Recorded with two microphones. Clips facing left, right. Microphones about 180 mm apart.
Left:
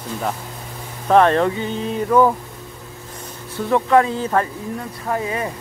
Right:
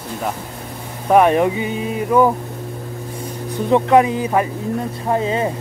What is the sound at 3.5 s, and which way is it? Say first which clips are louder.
Speech: right 2 dB; 20° right (ahead or behind).